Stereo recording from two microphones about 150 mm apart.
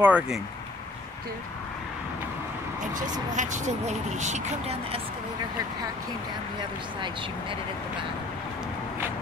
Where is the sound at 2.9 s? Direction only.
55° right (ahead or behind).